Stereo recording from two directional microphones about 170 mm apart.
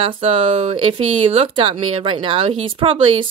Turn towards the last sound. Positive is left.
turn(degrees=-30)  # may be behind; listen again after turning